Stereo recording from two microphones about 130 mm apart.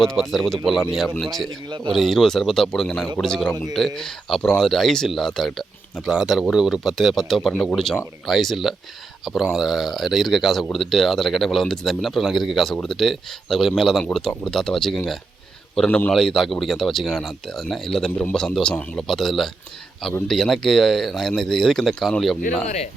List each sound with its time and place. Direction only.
0.0 s speech: centre (ahead or behind)
1.9 s a man's voice: centre (ahead or behind)
22.6 s speech: 60° left (ahead or behind)